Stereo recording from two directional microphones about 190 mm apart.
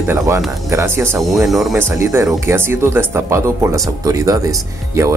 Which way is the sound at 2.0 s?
15° right (ahead or behind).